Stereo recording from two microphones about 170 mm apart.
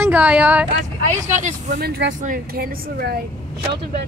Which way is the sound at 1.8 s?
75° right (ahead or behind).